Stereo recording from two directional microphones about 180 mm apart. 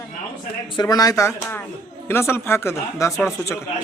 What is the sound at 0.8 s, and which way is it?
Speech, 20° left (ahead or behind).